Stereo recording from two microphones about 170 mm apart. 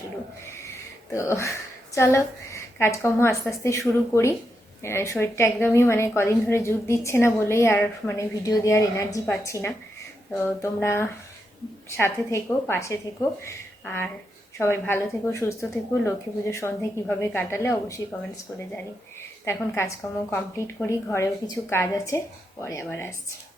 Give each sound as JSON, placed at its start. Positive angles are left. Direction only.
{"t": 1.1, "sound": "a woman's voice", "side_deg": 15}
{"t": 19.5, "sound": "a woman's voice", "side_deg": 15}